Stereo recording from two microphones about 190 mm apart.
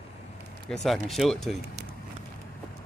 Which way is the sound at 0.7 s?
Centre (ahead or behind).